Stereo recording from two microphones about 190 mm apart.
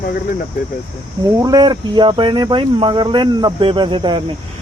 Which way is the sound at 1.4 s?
20° right (ahead or behind).